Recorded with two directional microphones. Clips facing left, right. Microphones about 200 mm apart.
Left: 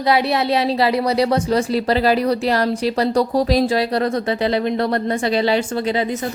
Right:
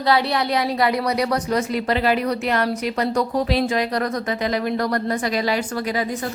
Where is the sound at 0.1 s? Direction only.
20° left (ahead or behind).